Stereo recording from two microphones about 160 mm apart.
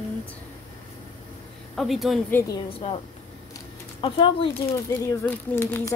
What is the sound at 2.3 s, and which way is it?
Speech, 15° left (ahead or behind).